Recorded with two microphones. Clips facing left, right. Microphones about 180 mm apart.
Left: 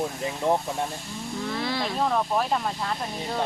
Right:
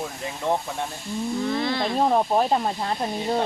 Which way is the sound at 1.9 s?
30° right (ahead or behind).